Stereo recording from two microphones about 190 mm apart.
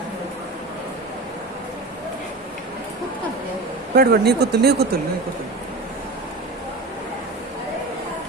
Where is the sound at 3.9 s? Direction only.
55° right (ahead or behind).